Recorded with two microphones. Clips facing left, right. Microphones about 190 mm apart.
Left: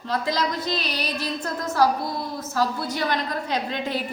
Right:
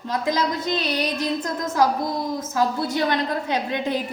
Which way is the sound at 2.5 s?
20° right (ahead or behind).